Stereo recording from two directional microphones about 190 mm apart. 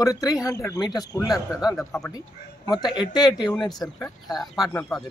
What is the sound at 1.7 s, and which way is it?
Speech, centre (ahead or behind).